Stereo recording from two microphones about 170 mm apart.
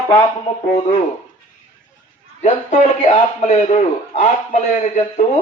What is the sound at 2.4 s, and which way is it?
A man's voice, 45° left (ahead or behind).